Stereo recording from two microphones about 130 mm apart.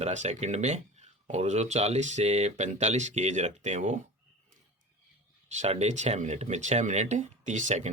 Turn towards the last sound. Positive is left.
turn(degrees=-65)  # may be behind; listen again after turning